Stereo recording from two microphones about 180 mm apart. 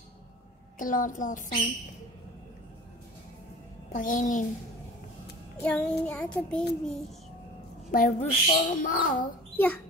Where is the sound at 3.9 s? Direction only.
45° left (ahead or behind).